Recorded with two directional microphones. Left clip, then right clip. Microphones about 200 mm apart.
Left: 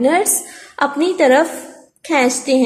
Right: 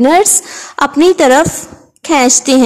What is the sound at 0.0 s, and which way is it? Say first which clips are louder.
A woman's voice: right 6 dB; 25° right (ahead or behind).